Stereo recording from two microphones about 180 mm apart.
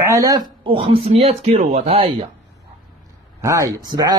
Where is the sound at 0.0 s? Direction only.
20° right (ahead or behind).